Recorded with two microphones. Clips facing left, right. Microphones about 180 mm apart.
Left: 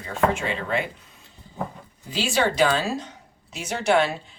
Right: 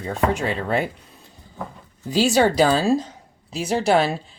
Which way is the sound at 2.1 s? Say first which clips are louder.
Right 6 dB; 40° right (ahead or behind).